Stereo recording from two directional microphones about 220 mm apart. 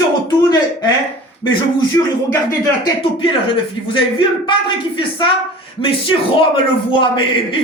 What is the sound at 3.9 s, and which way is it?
Speech, 20° left (ahead or behind).